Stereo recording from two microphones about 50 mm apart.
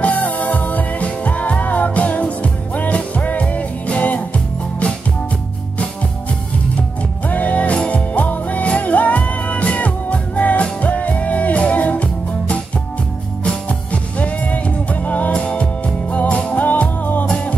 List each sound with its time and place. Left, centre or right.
0.0 s music: left
7.2 s music: left